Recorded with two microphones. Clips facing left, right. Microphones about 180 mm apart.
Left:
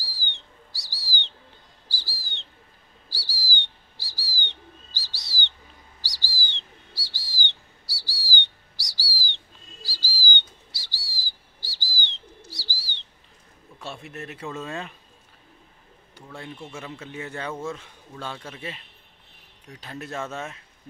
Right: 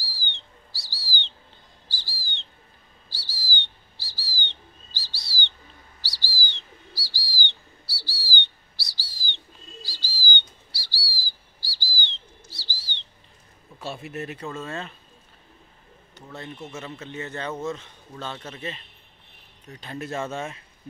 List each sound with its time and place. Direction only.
0.3 s bird: 15° left (ahead or behind)
1.9 s bird: 5° left (ahead or behind)
3.1 s bird: 10° left (ahead or behind)
13.7 s a sound: 5° right (ahead or behind)
14.4 s speech: centre (ahead or behind)
14.7 s a man's voice: 15° left (ahead or behind)
16.2 s a sound: 10° left (ahead or behind)
16.6 s a man's voice: 10° left (ahead or behind)